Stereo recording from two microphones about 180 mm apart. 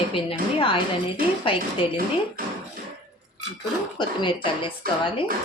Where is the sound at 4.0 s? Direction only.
30° left (ahead or behind).